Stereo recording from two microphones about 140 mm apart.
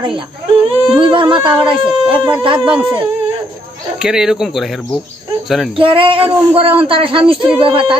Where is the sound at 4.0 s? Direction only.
5° right (ahead or behind).